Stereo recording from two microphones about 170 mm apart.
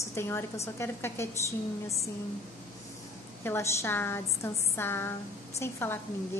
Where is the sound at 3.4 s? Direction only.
15° left (ahead or behind).